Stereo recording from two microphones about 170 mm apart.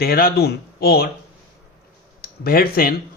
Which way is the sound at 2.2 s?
65° left (ahead or behind).